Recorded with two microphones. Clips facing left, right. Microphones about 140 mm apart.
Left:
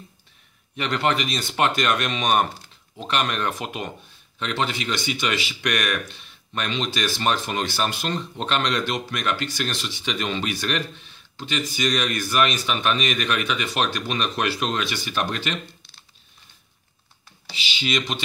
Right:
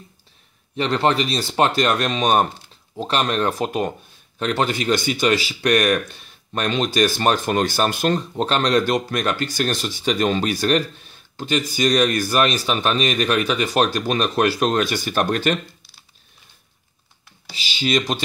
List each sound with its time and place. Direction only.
0.7 s speech: 30° right (ahead or behind); by 15.5 s 45° right (ahead or behind)
17.5 s speech: 40° right (ahead or behind)